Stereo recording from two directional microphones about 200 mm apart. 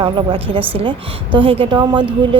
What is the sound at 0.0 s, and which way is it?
Speech, 25° right (ahead or behind).